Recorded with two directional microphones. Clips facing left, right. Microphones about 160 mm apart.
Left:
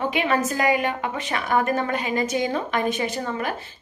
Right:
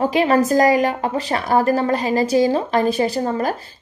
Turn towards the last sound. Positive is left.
turn(degrees=-40)  # may be behind; listen again after turning